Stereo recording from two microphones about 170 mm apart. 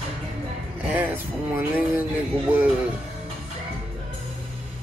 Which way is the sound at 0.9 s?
10° right (ahead or behind).